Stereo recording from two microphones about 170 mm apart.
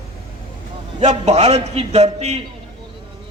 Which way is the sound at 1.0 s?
40° right (ahead or behind).